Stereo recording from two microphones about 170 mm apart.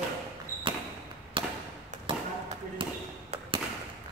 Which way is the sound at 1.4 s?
30° right (ahead or behind).